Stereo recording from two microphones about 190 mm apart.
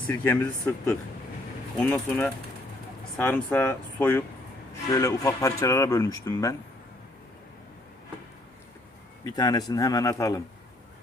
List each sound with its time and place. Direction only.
0.1 s speech: 5° left (ahead or behind)
9.3 s speech: 20° left (ahead or behind)